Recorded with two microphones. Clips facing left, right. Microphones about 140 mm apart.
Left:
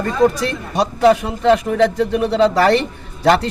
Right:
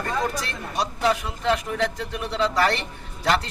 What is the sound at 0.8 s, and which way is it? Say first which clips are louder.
Speech: left 10 dB; 60° left (ahead or behind).